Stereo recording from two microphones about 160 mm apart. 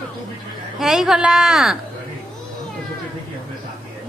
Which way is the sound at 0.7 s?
Centre (ahead or behind).